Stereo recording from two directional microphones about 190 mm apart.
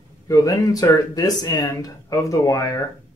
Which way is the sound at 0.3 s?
15° left (ahead or behind).